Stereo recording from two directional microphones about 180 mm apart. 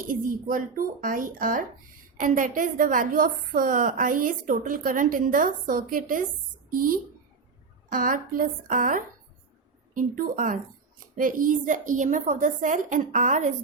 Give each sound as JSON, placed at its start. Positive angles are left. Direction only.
{"t": 0.1, "sound": "a woman's voice", "side_deg": -50}